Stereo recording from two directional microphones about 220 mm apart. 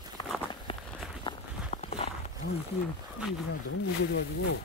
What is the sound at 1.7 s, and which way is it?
Walk, 30° left (ahead or behind).